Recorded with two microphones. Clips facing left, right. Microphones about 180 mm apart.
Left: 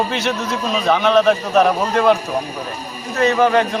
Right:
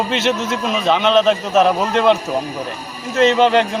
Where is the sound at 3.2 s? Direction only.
20° right (ahead or behind).